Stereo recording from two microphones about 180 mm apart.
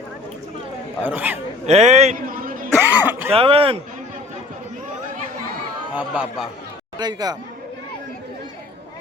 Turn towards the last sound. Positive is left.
turn(degrees=-20)  # may be behind; listen again after turning